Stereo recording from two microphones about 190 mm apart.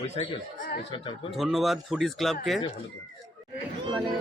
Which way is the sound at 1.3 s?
Centre (ahead or behind).